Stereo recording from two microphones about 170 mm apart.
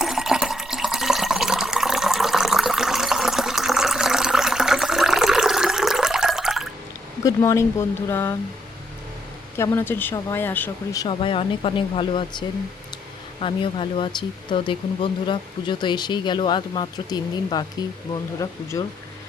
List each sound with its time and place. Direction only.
0.0 s water: centre (ahead or behind)
7.3 s speech: 15° left (ahead or behind)
9.6 s speech: 15° left (ahead or behind)
11.0 s speech: 30° left (ahead or behind)